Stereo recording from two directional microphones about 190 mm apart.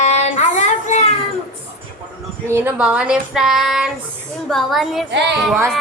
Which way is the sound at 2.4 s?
10° right (ahead or behind).